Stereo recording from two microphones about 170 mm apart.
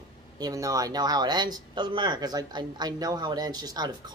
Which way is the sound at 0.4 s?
20° right (ahead or behind).